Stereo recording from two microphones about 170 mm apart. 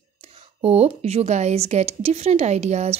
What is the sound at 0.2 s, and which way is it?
Speech, 35° right (ahead or behind).